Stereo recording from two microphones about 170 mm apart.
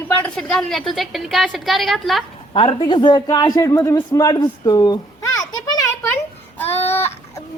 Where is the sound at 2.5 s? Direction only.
30° left (ahead or behind).